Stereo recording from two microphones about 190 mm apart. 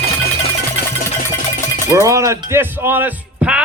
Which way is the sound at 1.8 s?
15° right (ahead or behind).